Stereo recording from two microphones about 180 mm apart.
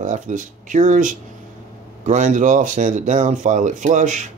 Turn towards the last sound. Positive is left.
turn(degrees=-45)  # may be behind; listen again after turning